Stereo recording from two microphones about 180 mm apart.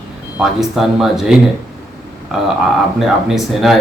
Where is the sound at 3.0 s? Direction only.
Centre (ahead or behind).